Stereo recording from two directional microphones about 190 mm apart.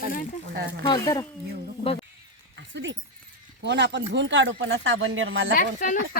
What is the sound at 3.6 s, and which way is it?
Speech, 65° right (ahead or behind).